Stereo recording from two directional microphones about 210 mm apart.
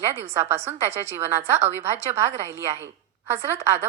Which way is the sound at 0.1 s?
10° right (ahead or behind).